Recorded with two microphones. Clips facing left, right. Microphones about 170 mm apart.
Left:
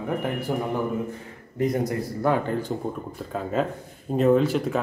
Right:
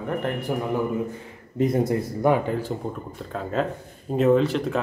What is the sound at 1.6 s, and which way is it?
Speech, 25° right (ahead or behind).